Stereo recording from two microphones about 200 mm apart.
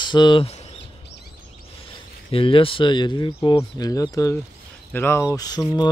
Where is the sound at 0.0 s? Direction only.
20° left (ahead or behind).